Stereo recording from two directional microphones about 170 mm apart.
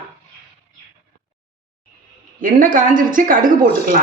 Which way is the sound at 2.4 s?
55° right (ahead or behind).